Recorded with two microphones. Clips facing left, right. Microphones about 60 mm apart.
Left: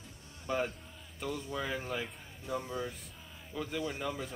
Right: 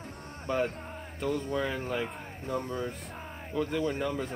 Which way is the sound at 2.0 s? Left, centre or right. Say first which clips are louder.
Right 7 dB; right.